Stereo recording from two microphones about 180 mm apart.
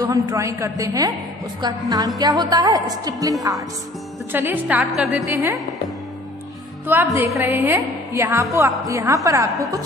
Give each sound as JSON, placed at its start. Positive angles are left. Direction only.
{"t": 0.0, "sound": "a woman's voice", "side_deg": -20}
{"t": 6.9, "sound": "a woman's voice", "side_deg": -10}